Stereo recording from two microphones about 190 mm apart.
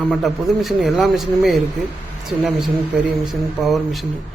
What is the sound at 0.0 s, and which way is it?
A man's voice, centre (ahead or behind).